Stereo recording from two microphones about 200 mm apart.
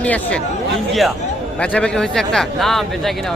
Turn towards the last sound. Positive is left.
turn(degrees=0)  # may be behind; listen again after turning